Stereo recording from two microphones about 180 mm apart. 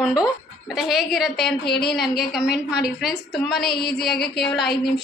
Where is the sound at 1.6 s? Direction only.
65° left (ahead or behind).